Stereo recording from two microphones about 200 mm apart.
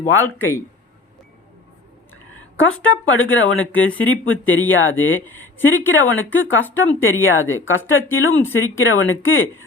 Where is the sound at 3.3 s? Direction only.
85° left.